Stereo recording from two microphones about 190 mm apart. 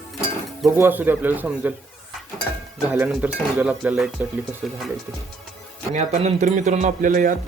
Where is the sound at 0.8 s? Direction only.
10° right (ahead or behind).